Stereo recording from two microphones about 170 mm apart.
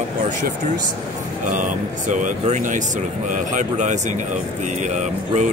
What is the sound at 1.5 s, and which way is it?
Speech, 50° right (ahead or behind).